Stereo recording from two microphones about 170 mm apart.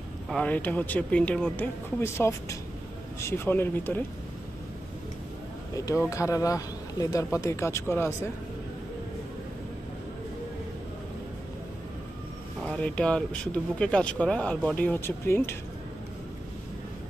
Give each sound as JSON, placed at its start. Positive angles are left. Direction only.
{"t": 0.3, "sound": "speech", "side_deg": 10}
{"t": 5.8, "sound": "speech", "side_deg": 20}
{"t": 12.6, "sound": "speech", "side_deg": 5}